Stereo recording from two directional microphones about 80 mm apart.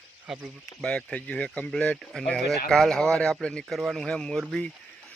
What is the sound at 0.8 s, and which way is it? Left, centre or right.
Speech, centre.